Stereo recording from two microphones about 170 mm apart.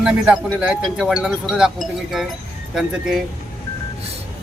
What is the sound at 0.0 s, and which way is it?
Speech, 5° right (ahead or behind).